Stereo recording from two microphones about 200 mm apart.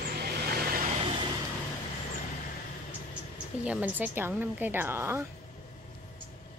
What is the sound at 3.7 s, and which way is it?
A woman's voice, 10° right (ahead or behind).